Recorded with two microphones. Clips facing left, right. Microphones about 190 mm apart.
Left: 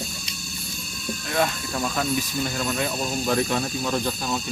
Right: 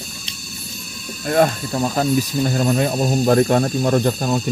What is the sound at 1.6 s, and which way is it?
Speech, 35° right (ahead or behind).